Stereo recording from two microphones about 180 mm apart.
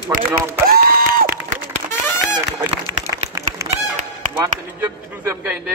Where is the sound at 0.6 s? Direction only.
55° right (ahead or behind).